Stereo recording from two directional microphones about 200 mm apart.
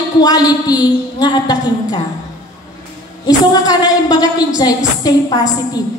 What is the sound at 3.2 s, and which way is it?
A woman's voice, 20° left (ahead or behind).